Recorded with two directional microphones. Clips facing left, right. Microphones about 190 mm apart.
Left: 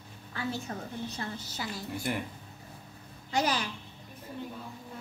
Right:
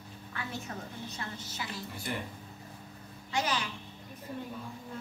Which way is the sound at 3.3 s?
35° left (ahead or behind).